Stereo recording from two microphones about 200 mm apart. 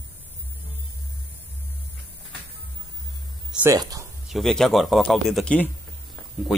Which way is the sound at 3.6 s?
15° right (ahead or behind).